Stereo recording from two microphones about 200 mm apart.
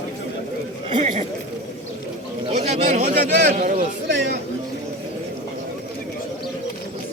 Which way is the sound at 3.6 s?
40° right (ahead or behind).